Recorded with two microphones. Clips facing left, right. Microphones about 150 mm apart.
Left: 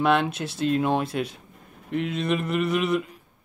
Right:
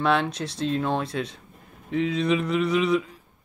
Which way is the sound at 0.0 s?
5° left (ahead or behind).